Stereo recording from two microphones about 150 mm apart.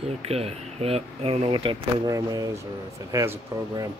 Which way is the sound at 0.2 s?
40° right (ahead or behind).